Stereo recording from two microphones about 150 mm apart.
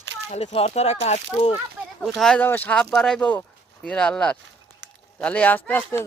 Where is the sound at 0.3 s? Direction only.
45° left (ahead or behind).